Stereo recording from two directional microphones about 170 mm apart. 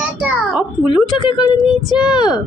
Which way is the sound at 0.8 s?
25° left (ahead or behind).